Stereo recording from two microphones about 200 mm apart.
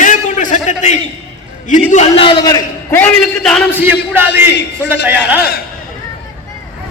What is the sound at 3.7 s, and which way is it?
Speech, 10° right (ahead or behind).